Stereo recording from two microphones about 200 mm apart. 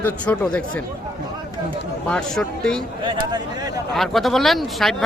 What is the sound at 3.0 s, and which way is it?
Speech, 20° right (ahead or behind).